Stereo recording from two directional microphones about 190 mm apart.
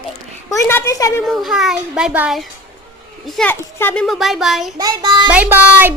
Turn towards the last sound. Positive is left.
turn(degrees=-10)  # may be behind; listen again after turning